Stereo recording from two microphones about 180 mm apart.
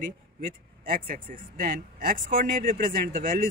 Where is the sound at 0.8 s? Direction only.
50° right (ahead or behind).